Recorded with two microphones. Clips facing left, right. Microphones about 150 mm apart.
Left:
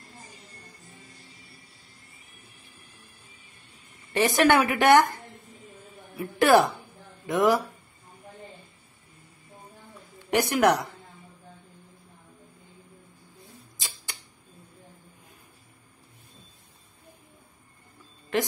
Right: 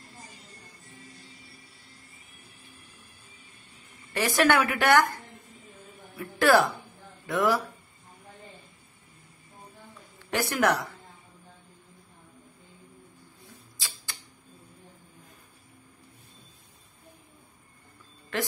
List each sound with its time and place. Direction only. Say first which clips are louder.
4.1 s a woman's voice: left 3 dB; 20° left (ahead or behind)
6.1 s a woman's voice: left 2 dB; 20° left (ahead or behind)
10.3 s a woman's voice: left 4 dB; 15° left (ahead or behind)
13.7 s tick-tock: left 1 dB; 20° left (ahead or behind)